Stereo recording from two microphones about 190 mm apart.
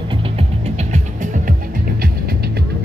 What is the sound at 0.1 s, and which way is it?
Music, 30° right (ahead or behind).